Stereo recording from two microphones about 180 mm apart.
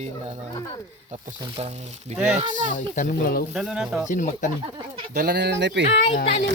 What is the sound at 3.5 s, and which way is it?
Speech, centre (ahead or behind).